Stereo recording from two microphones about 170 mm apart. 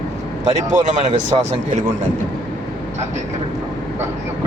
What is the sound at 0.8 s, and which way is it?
Speech, 45° right (ahead or behind).